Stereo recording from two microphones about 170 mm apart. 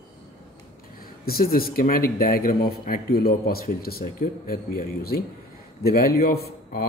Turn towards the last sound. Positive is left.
turn(degrees=65)  # may be behind; listen again after turning